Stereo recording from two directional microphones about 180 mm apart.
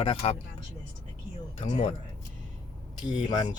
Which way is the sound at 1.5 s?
35° left (ahead or behind).